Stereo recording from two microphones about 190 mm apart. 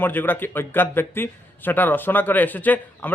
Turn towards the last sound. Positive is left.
turn(degrees=10)  # may be behind; listen again after turning